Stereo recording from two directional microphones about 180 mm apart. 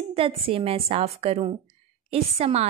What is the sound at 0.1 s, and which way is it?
A woman's voice, 30° right (ahead or behind).